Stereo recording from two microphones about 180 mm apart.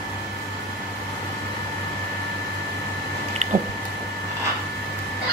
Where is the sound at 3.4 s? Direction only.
40° right (ahead or behind).